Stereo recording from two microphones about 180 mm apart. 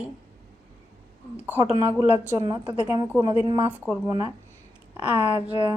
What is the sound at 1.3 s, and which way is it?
Speech, 10° right (ahead or behind).